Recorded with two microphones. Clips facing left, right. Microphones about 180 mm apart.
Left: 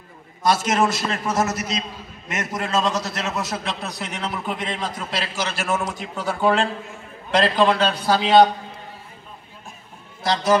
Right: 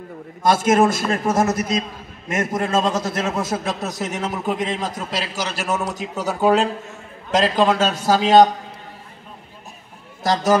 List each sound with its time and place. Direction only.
0.4 s a man's voice: 50° right (ahead or behind)
5.7 s a man's voice: centre (ahead or behind)
5.9 s a man's voice: 40° right (ahead or behind)
10.2 s a man's voice: 45° right (ahead or behind)